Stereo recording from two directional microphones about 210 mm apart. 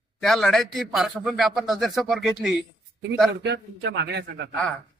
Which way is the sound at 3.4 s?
50° right (ahead or behind).